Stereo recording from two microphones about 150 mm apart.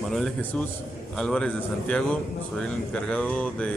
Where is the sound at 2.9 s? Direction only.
10° left (ahead or behind).